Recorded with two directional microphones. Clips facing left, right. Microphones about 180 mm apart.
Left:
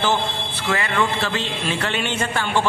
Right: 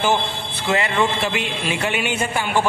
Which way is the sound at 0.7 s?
20° right (ahead or behind).